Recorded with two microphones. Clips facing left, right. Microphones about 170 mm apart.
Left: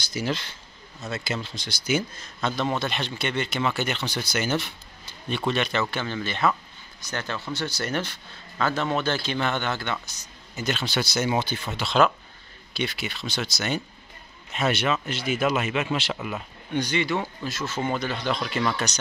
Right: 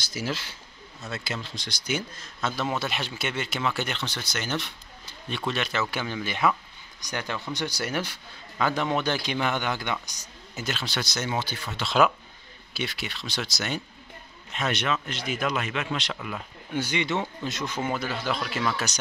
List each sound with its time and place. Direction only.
0.0 s a man's voice: centre (ahead or behind)
10.5 s a man's voice: centre (ahead or behind)
11.4 s speech: 25° left (ahead or behind)
11.8 s a man's voice: 5° right (ahead or behind)
16.7 s a man's voice: 10° right (ahead or behind)
17.0 s a man's voice: 20° right (ahead or behind); by 18.9 s 5° right (ahead or behind)